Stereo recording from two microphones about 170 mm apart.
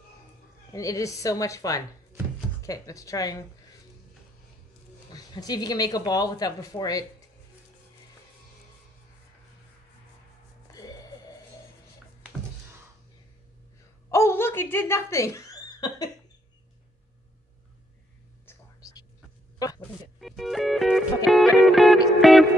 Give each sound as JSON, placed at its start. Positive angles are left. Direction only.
{"t": 0.7, "sound": "speech", "side_deg": 20}
{"t": 5.1, "sound": "speech", "side_deg": 25}
{"t": 10.7, "sound": "music", "side_deg": 20}
{"t": 14.1, "sound": "chuckle", "side_deg": 15}
{"t": 18.4, "sound": "whispering", "side_deg": 15}
{"t": 20.2, "sound": "music", "side_deg": 0}